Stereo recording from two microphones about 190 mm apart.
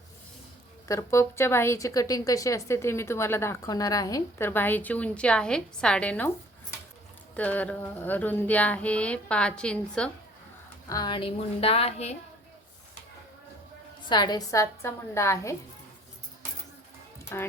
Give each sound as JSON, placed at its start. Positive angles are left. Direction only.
{"t": 0.9, "sound": "a woman's voice", "side_deg": 15}
{"t": 7.3, "sound": "a woman's voice", "side_deg": 10}
{"t": 10.8, "sound": "a woman's voice", "side_deg": 20}
{"t": 14.1, "sound": "a woman's voice", "side_deg": 20}
{"t": 17.3, "sound": "a woman's voice", "side_deg": 15}